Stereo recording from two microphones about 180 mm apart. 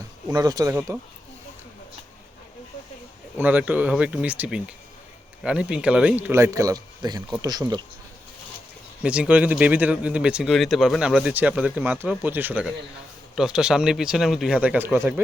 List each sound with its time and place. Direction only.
0.3 s speech: 20° right (ahead or behind)
3.3 s speech: 10° right (ahead or behind)
9.0 s speech: 5° right (ahead or behind)